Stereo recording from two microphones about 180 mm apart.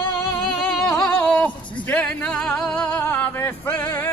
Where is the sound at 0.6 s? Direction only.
5° left (ahead or behind).